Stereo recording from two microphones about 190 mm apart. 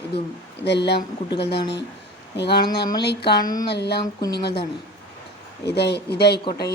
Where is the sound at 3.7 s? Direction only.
60° left (ahead or behind).